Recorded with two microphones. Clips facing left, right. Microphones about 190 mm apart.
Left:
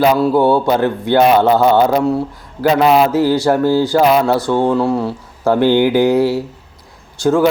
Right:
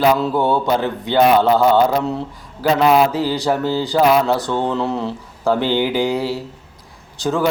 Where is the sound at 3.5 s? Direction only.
15° left (ahead or behind).